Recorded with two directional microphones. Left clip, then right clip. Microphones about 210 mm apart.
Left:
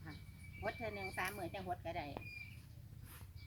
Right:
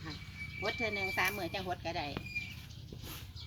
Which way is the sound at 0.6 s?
10° right (ahead or behind).